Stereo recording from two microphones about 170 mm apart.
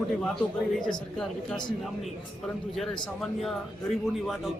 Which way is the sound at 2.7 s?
Centre (ahead or behind).